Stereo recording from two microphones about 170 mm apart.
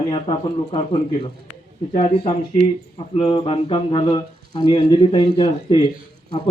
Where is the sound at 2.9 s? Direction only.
35° left (ahead or behind).